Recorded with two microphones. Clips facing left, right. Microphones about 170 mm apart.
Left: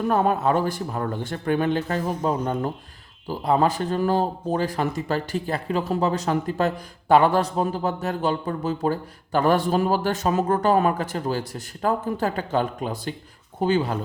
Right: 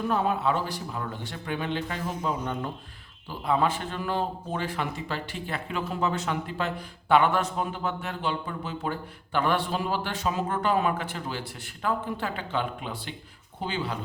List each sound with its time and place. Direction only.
0.1 s speech: 50° left (ahead or behind)
2.3 s speech: 35° left (ahead or behind)